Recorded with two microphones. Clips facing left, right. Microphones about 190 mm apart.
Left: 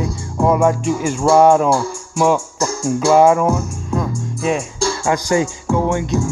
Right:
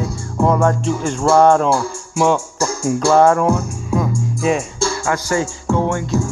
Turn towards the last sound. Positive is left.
turn(degrees=15)  # may be behind; listen again after turning